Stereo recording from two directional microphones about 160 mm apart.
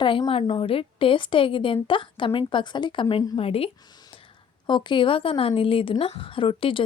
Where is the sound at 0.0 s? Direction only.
30° left (ahead or behind).